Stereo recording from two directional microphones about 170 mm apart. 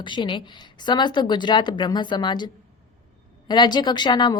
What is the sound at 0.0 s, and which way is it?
A woman's voice, 30° left (ahead or behind).